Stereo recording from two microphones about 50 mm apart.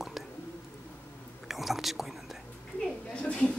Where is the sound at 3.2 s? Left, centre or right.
Centre.